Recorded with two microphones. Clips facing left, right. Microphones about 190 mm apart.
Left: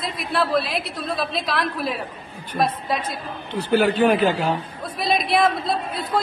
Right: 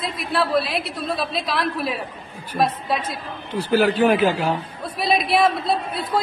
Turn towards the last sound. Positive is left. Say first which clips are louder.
# right 1 dB
turn(degrees=-5)  # may be behind; listen again after turning